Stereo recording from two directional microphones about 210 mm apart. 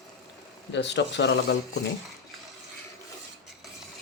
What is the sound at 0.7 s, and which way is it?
Speech, 55° left (ahead or behind).